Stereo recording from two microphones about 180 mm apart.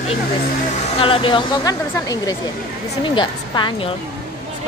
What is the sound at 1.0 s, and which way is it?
Speech, 30° left (ahead or behind).